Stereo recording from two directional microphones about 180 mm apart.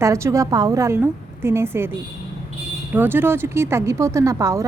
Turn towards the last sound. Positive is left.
turn(degrees=-20)  # may be behind; listen again after turning